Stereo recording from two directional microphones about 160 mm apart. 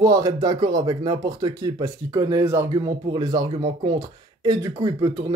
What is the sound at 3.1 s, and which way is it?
Speech, 25° right (ahead or behind).